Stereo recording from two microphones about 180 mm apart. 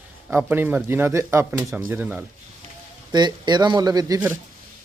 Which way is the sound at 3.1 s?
25° right (ahead or behind).